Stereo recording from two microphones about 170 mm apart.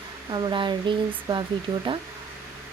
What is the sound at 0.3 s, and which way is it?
Speech, 25° right (ahead or behind).